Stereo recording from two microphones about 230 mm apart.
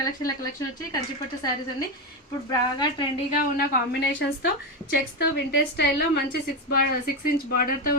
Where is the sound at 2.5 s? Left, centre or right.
Centre.